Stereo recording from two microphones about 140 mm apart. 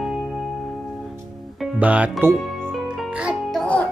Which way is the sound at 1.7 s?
10° right (ahead or behind).